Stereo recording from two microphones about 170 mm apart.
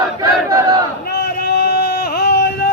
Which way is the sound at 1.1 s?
70° left (ahead or behind).